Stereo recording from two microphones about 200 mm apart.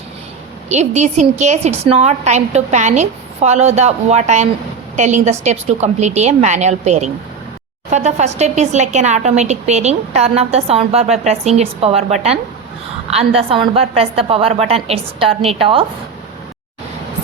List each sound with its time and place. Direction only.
0.7 s a woman's voice: 35° right (ahead or behind)